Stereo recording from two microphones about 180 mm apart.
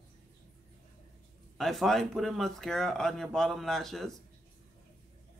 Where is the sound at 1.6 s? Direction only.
Centre (ahead or behind).